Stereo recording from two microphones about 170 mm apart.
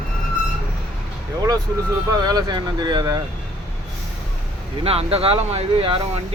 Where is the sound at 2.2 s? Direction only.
25° right (ahead or behind).